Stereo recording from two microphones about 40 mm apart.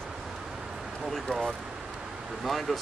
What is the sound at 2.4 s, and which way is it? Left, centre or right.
Speech, centre.